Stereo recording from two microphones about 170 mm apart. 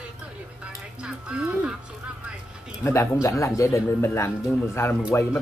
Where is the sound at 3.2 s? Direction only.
20° left (ahead or behind).